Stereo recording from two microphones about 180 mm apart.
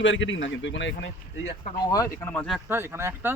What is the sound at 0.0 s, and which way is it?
Speech, 90° left.